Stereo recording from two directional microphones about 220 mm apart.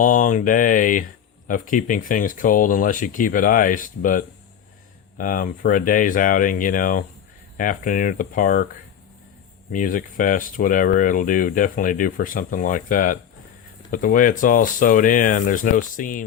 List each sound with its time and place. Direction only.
0.0 s speech: 35° left (ahead or behind)
9.7 s speech: 35° left (ahead or behind)